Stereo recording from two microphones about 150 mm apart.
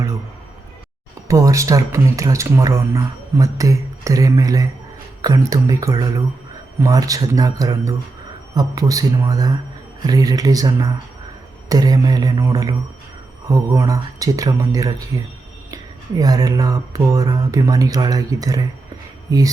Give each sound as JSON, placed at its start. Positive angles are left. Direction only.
{"t": 1.3, "sound": "speech", "side_deg": -20}